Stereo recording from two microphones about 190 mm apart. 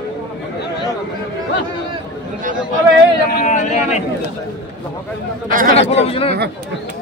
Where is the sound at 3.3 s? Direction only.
40° left (ahead or behind).